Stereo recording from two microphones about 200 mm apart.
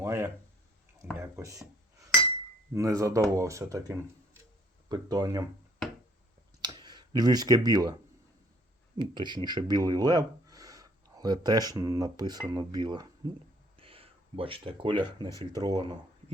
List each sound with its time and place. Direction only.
0.0 s a sound: 15° right (ahead or behind)
1.1 s speech: 15° right (ahead or behind)
2.7 s speech: 15° right (ahead or behind)
6.6 s speech: 20° right (ahead or behind)
9.0 s speech: 25° right (ahead or behind)
15.3 s speech: 15° left (ahead or behind)
15.6 s speech: 20° right (ahead or behind)